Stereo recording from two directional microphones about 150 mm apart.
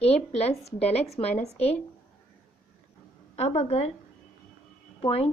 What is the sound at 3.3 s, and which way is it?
Speech, 45° left (ahead or behind).